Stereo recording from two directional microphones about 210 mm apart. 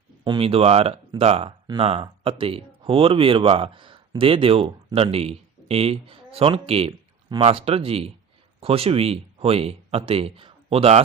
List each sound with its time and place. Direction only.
0.3 s speech: 25° right (ahead or behind)